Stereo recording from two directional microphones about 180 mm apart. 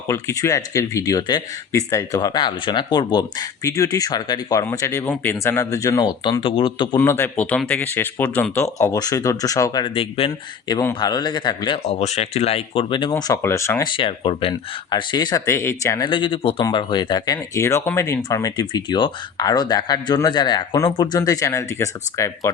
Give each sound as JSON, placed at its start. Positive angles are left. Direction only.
{"t": 0.1, "sound": "speech", "side_deg": 15}
{"t": 7.0, "sound": "speech", "side_deg": 15}
{"t": 13.2, "sound": "speech", "side_deg": 15}